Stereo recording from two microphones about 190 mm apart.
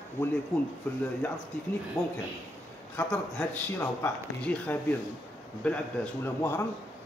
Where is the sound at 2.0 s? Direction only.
20° left (ahead or behind).